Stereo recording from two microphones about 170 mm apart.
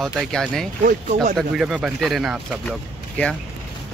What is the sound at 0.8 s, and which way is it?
Speech, 50° right (ahead or behind).